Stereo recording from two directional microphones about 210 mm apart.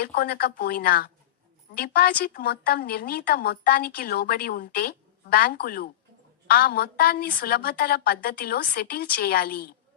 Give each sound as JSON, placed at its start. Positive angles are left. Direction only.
{"t": 0.0, "sound": "a woman's voice", "side_deg": 45}